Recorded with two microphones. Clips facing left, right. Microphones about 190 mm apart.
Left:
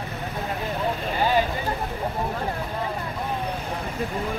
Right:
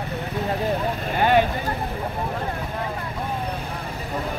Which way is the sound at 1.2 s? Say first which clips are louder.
Right 4 dB; 65° right (ahead or behind).